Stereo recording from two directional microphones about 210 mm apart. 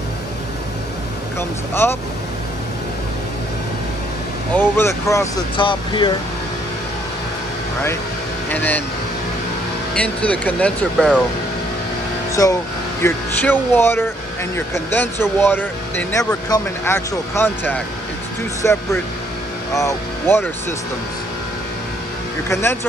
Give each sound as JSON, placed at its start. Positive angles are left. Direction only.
{"t": 1.7, "sound": "speech", "side_deg": 10}
{"t": 4.6, "sound": "speech", "side_deg": 10}
{"t": 8.5, "sound": "speech", "side_deg": 10}
{"t": 9.9, "sound": "speech", "side_deg": 5}
{"t": 12.4, "sound": "speech", "side_deg": 15}
{"t": 22.5, "sound": "speech", "side_deg": 10}